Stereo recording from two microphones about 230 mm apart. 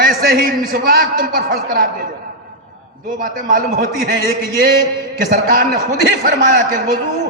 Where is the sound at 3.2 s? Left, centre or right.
Right.